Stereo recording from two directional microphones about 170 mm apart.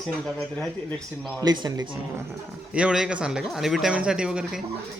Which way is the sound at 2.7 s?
5° right (ahead or behind).